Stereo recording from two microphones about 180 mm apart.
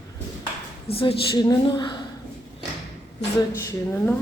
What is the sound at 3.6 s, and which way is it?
Speech, 15° left (ahead or behind).